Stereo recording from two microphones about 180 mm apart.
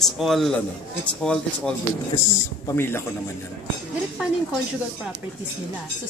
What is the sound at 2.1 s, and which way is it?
Speech, 15° left (ahead or behind).